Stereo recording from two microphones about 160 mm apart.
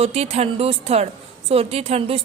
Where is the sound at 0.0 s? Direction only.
40° right (ahead or behind).